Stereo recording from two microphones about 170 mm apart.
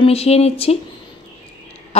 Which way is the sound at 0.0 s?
35° left (ahead or behind).